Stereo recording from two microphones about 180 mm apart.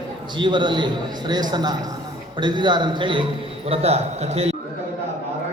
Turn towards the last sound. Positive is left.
turn(degrees=-35)  # may be behind; listen again after turning